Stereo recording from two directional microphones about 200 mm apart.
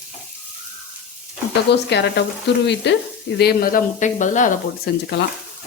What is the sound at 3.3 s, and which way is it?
Speech, 50° left (ahead or behind).